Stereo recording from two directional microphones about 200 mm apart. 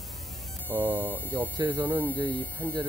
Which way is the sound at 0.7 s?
10° left (ahead or behind).